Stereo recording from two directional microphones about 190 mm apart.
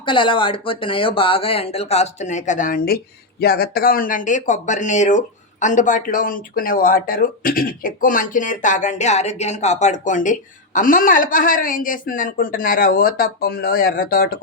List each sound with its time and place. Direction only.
0.0 s speech: 25° left (ahead or behind); by 14.3 s 50° left (ahead or behind)